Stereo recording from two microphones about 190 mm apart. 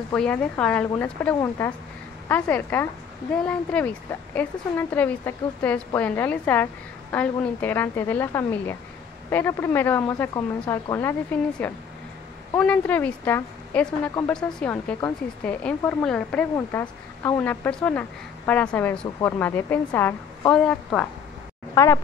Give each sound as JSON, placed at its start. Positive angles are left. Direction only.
{"t": 0.1, "sound": "a woman's voice", "side_deg": 5}
{"t": 21.7, "sound": "a woman's voice", "side_deg": 15}